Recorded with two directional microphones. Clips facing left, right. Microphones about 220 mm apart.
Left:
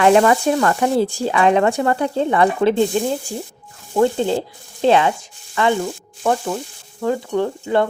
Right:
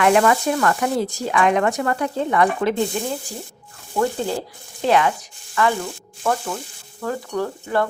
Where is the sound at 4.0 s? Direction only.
25° left (ahead or behind).